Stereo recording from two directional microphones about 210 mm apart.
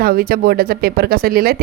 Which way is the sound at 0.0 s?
45° right (ahead or behind).